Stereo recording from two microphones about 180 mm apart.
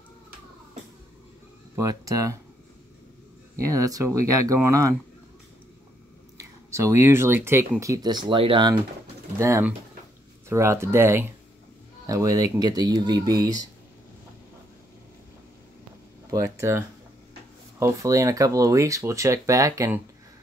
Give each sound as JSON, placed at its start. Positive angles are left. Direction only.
{"t": 1.8, "sound": "speech", "side_deg": -20}
{"t": 3.5, "sound": "speech", "side_deg": -20}
{"t": 6.3, "sound": "speech", "side_deg": -15}
{"t": 9.4, "sound": "speech", "side_deg": -15}
{"t": 16.3, "sound": "speech", "side_deg": -20}